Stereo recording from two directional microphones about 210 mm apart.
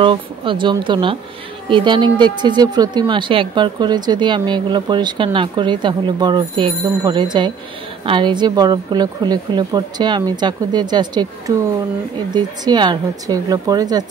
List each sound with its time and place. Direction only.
0.0 s speech: 25° right (ahead or behind)